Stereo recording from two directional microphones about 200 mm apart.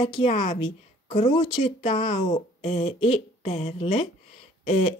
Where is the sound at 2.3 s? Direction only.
35° left (ahead or behind).